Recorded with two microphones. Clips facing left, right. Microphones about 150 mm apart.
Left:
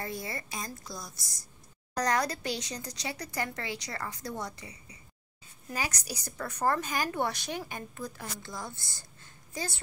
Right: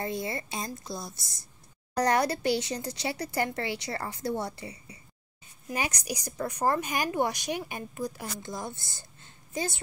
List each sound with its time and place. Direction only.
0.0 s speech: 25° right (ahead or behind)
5.7 s a woman's voice: 20° right (ahead or behind)